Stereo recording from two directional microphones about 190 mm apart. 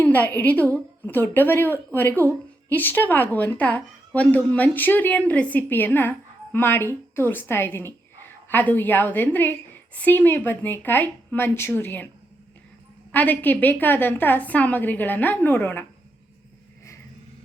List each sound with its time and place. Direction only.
0.0 s a woman's voice: 10° left (ahead or behind)
13.1 s a woman's voice: 10° left (ahead or behind)